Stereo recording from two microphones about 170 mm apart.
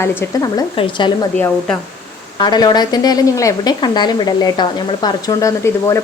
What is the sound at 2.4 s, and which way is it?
Speech, 25° left (ahead or behind).